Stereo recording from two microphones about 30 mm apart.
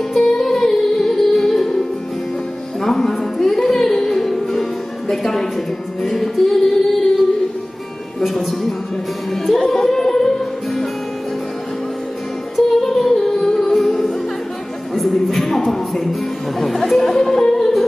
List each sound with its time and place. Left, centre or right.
0.1 s music: centre
2.8 s music: centre
8.2 s a woman's voice: centre
9.3 s music: centre
12.8 s music: centre
17.2 s music: centre